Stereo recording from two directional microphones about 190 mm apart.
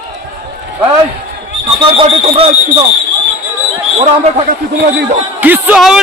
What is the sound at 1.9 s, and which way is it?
Speech, 30° right (ahead or behind).